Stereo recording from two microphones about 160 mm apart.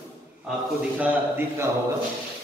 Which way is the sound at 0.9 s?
10° right (ahead or behind).